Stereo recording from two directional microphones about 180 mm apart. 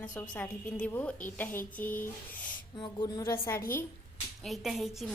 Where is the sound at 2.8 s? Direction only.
20° left (ahead or behind).